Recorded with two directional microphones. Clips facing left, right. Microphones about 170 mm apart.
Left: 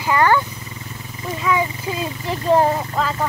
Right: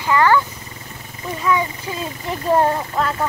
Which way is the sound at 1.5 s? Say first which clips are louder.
Even; 20° left (ahead or behind).